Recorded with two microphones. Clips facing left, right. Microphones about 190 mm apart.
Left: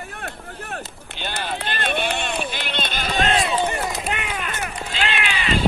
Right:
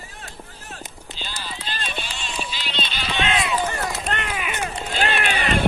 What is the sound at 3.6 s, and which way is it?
Run, 15° left (ahead or behind).